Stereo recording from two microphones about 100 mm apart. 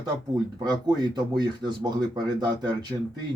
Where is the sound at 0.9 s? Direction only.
45° right (ahead or behind).